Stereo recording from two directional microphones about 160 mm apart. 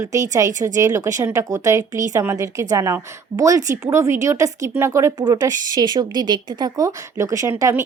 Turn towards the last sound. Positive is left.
turn(degrees=-20)  # may be behind; listen again after turning